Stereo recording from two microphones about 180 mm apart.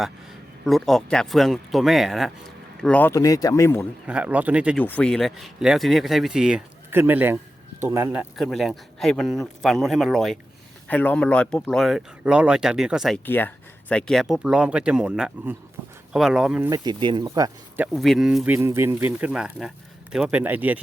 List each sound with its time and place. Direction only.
0.6 s speech: centre (ahead or behind); by 3.8 s 15° left (ahead or behind)
4.0 s speech: 5° right (ahead or behind)
4.8 s speech: 10° left (ahead or behind)
13.2 s speech: 10° left (ahead or behind)
16.6 s speech: 20° right (ahead or behind)
17.9 s speech: centre (ahead or behind)